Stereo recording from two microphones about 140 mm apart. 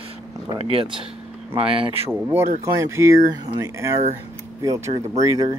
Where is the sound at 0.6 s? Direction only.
45° right (ahead or behind).